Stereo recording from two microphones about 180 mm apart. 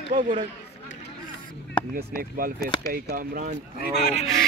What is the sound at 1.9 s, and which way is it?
Speech, 55° right (ahead or behind).